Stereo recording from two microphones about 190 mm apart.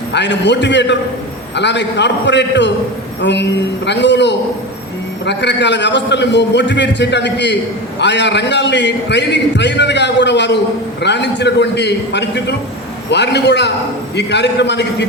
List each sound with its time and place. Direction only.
0.1 s a man's voice: 65° left (ahead or behind)